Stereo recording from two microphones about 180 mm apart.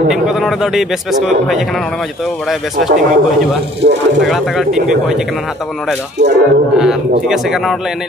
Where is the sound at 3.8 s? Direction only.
65° right (ahead or behind).